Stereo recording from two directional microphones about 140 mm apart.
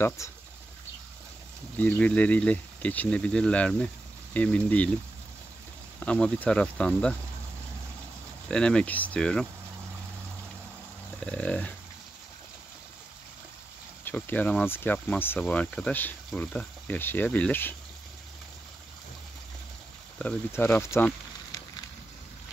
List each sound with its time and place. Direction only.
0.2 s speech: 20° left (ahead or behind)
1.8 s speech: 10° left (ahead or behind)
5.9 s speech: 10° left (ahead or behind)
8.5 s speech: 5° left (ahead or behind)
11.1 s dog: 10° left (ahead or behind)
14.0 s speech: 15° left (ahead or behind)
20.2 s speech: 10° left (ahead or behind)